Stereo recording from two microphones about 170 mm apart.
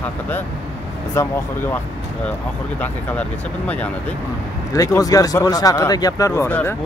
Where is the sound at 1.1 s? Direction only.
10° left (ahead or behind).